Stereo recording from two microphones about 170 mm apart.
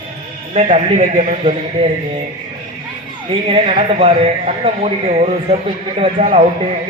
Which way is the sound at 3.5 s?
35° right (ahead or behind).